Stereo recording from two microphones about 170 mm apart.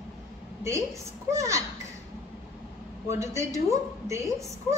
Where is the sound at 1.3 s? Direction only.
20° right (ahead or behind).